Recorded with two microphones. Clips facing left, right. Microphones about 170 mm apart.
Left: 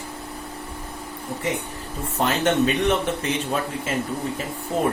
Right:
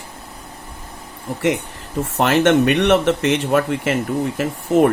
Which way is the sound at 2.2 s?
80° right.